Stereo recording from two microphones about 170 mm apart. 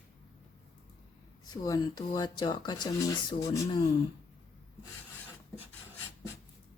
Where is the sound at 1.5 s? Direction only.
20° left (ahead or behind).